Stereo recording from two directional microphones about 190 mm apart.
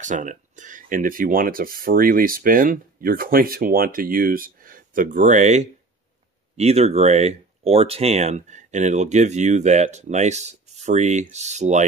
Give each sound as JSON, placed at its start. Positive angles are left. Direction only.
{"t": 0.0, "sound": "speech", "side_deg": -40}